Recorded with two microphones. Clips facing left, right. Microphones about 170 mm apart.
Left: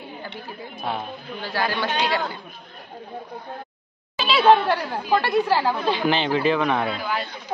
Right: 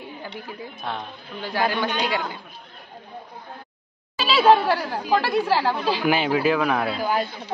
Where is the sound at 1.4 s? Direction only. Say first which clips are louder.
Right 2 dB; 15° right (ahead or behind).